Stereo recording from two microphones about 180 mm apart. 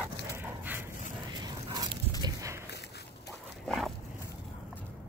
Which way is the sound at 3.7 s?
Centre (ahead or behind).